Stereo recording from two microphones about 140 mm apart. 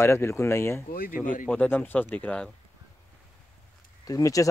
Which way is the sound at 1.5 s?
10° left (ahead or behind).